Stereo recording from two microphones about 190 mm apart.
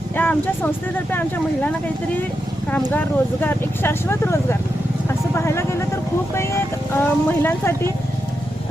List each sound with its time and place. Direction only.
0.2 s speech: 10° left (ahead or behind)
3.4 s speech: 10° left (ahead or behind)